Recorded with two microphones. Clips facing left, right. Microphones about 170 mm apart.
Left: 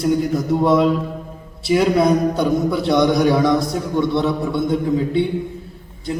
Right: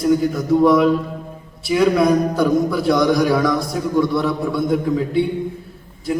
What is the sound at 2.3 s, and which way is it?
A man's voice, 25° left (ahead or behind).